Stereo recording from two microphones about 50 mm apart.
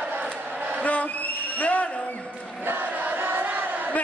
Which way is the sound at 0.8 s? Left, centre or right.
Left.